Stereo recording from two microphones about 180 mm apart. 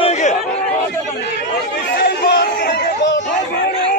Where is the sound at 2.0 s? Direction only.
70° left (ahead or behind).